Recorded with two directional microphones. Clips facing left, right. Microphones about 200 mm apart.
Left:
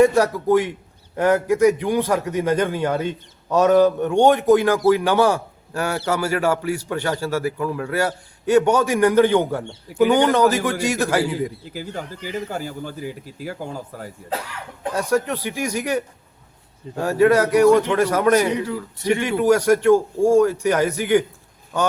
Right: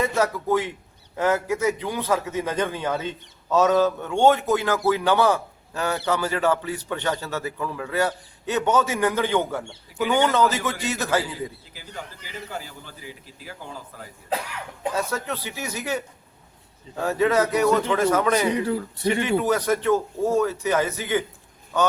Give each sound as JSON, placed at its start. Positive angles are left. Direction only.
{"t": 0.0, "sound": "a man's voice", "side_deg": 15}
{"t": 11.7, "sound": "speech", "side_deg": 45}
{"t": 14.9, "sound": "a man's voice", "side_deg": 15}
{"t": 17.0, "sound": "a man's voice", "side_deg": 10}